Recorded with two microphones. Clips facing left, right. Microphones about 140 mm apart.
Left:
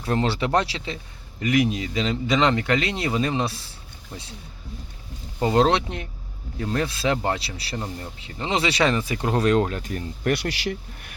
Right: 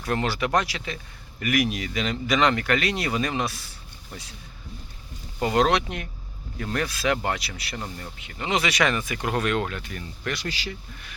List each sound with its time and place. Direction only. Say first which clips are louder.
0.0 s speech: left 2 dB; 25° left (ahead or behind)
5.4 s speech: left 2 dB; 25° left (ahead or behind)
10.3 s speech: left 6 dB; 65° left (ahead or behind)